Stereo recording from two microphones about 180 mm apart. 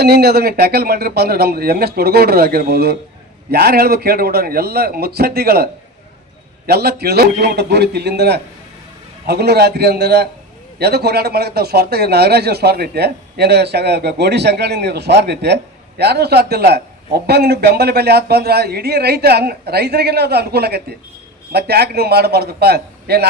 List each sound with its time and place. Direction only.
0.0 s speech: 60° right (ahead or behind)
6.7 s a man's voice: 60° right (ahead or behind)